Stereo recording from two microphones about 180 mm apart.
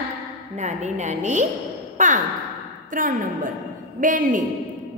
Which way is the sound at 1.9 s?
45° right (ahead or behind).